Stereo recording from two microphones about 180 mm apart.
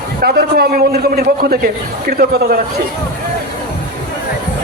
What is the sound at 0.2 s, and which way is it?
A man's voice, 60° right (ahead or behind).